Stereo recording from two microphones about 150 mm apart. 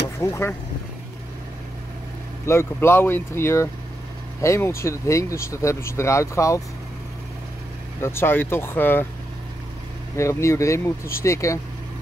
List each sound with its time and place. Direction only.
0.2 s speech: 20° left (ahead or behind)
2.4 s speech: 20° left (ahead or behind)
8.0 s speech: 15° left (ahead or behind)
10.1 s speech: 20° left (ahead or behind)